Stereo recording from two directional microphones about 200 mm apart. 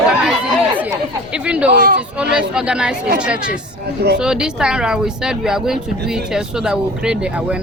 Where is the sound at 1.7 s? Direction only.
45° right (ahead or behind).